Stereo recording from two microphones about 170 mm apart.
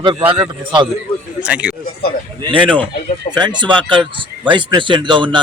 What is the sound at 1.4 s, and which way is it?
Speech, 5° right (ahead or behind).